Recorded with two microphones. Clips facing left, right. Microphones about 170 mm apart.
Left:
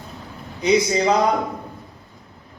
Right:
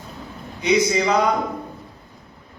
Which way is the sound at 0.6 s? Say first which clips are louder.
Left 1 dB; 35° left (ahead or behind).